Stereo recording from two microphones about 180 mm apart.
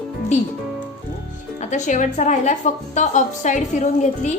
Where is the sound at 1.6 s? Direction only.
45° left (ahead or behind).